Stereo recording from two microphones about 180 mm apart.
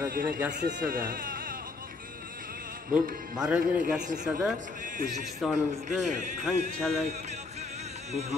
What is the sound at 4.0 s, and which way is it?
Speech, 45° right (ahead or behind).